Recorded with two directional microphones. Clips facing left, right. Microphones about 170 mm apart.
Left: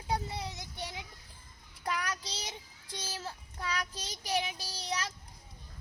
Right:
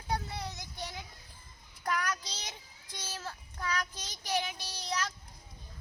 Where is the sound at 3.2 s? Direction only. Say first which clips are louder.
Even; 25° left (ahead or behind).